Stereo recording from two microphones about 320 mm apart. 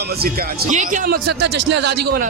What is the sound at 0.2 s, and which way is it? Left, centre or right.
A man's voice, right.